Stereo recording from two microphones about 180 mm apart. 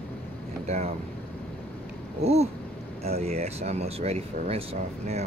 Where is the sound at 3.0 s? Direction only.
35° right (ahead or behind).